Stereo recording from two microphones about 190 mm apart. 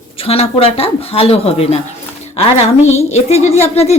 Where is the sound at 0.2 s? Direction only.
30° left (ahead or behind).